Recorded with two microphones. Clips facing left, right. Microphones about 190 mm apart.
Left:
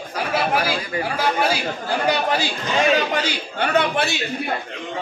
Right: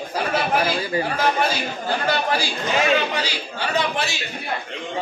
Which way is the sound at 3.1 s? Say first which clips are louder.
Left 3 dB; 55° left (ahead or behind).